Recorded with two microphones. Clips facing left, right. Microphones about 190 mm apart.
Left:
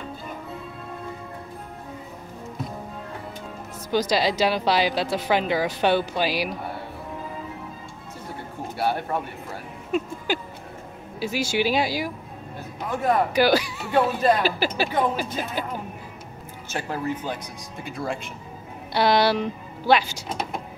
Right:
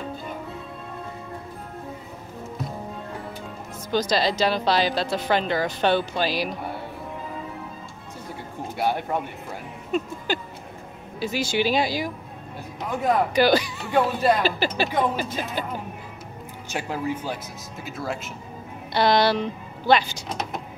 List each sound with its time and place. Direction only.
3.9 s speech: 10° left (ahead or behind)
8.7 s speech: 15° right (ahead or behind)
9.9 s speech: 10° left (ahead or behind)
16.7 s speech: 10° right (ahead or behind)
18.9 s speech: 10° left (ahead or behind)